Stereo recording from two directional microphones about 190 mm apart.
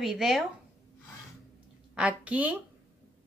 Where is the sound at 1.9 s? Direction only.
5° right (ahead or behind).